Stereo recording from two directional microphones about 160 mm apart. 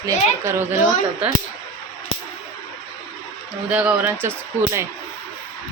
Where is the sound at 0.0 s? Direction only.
15° right (ahead or behind).